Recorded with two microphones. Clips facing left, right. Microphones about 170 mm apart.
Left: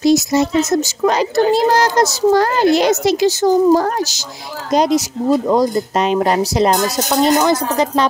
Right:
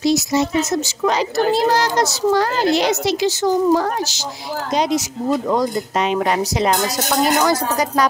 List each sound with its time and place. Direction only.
0.0 s a child's voice: 45° left (ahead or behind)
7.2 s speech: 25° left (ahead or behind)